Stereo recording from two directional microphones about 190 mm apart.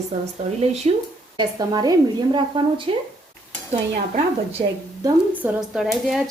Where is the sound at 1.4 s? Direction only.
20° right (ahead or behind).